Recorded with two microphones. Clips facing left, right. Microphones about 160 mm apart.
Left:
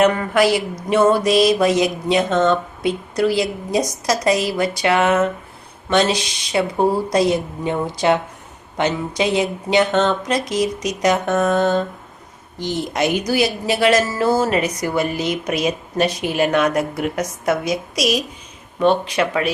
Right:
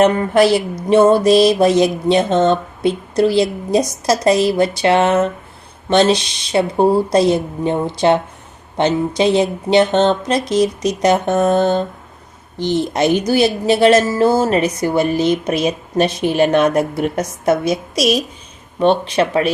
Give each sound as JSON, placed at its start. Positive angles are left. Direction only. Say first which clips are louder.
{"t": 0.0, "sound": "speech", "louder": "right 3 dB", "side_deg": -30}